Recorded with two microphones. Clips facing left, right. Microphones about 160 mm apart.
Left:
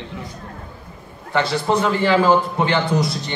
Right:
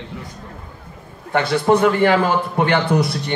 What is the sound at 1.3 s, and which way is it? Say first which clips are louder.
A man's voice: right 3 dB; 55° right (ahead or behind).